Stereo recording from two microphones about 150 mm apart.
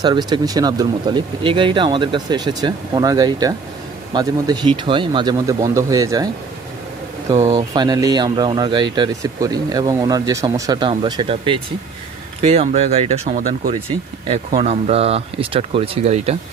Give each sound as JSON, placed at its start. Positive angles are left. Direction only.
{"t": 0.0, "sound": "speech", "side_deg": -25}
{"t": 7.5, "sound": "speech", "side_deg": -25}
{"t": 13.3, "sound": "speech", "side_deg": -65}
{"t": 14.3, "sound": "speech", "side_deg": -40}